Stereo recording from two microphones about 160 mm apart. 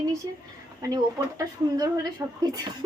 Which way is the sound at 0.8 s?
20° right (ahead or behind).